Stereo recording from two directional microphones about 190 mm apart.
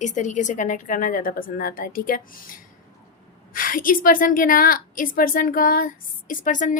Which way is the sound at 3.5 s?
45° left (ahead or behind).